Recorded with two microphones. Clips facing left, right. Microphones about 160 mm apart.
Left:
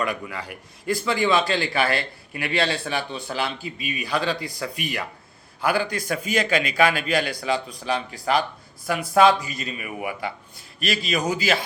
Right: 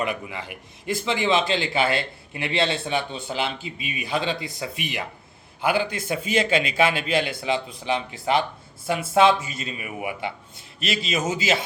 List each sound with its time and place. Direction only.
0.0 s a man's voice: 20° right (ahead or behind)